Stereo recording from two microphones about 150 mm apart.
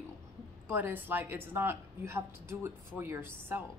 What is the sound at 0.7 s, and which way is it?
A woman's voice, 10° right (ahead or behind).